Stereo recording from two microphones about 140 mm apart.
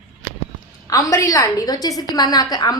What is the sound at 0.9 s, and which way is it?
A woman's voice, 25° left (ahead or behind).